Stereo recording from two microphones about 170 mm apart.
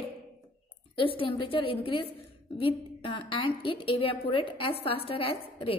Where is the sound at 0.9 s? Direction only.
30° left (ahead or behind).